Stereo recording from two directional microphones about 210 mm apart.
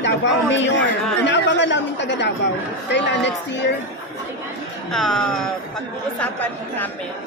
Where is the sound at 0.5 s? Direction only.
60° left (ahead or behind).